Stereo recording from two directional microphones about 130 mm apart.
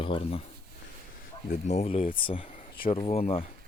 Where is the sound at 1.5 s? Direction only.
60° left (ahead or behind).